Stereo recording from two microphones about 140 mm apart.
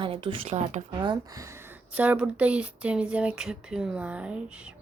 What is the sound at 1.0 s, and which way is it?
Speech, 30° right (ahead or behind).